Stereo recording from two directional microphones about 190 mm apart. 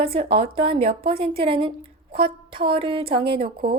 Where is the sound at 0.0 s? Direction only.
30° right (ahead or behind).